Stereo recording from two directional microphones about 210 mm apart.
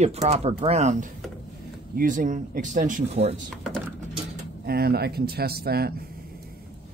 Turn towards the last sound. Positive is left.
turn(degrees=-45)  # may be behind; listen again after turning